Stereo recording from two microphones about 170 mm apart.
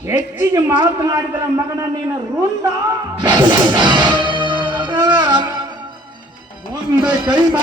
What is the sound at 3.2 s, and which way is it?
Music, 25° right (ahead or behind).